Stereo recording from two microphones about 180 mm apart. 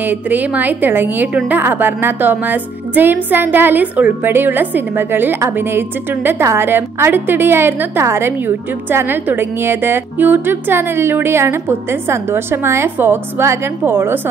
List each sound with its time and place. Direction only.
0.3 s a woman's voice: 10° right (ahead or behind)